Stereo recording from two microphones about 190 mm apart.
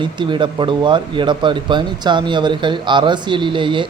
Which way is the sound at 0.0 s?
25° right (ahead or behind).